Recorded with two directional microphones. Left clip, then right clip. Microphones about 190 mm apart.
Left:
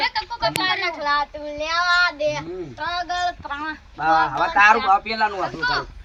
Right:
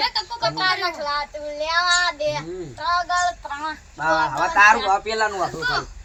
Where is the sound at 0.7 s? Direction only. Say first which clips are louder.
Even; 5° left (ahead or behind).